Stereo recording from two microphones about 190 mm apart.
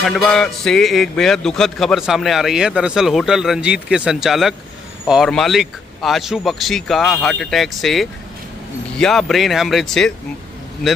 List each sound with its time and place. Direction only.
0.0 s a man's voice: centre (ahead or behind)